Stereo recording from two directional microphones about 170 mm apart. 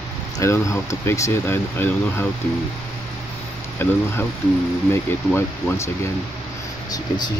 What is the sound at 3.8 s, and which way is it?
Speech, 15° left (ahead or behind).